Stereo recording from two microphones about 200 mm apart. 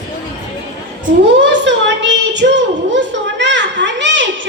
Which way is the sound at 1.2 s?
60° right (ahead or behind).